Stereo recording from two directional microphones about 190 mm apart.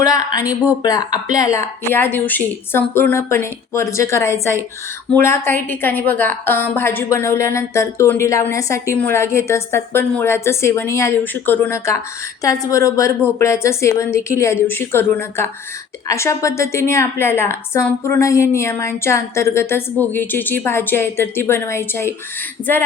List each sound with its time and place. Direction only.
0.0 s a woman's voice: 20° left (ahead or behind)